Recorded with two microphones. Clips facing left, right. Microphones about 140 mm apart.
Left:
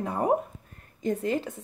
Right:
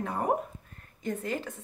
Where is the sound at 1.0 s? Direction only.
30° left (ahead or behind).